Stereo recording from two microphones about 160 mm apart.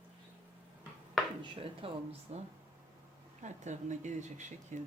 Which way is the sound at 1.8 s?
35° right (ahead or behind).